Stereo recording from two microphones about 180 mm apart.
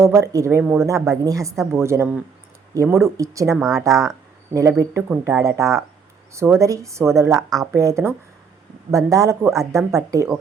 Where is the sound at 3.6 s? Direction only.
Centre (ahead or behind).